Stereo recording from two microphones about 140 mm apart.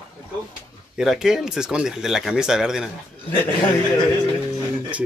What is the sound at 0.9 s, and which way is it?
Speech, 5° right (ahead or behind).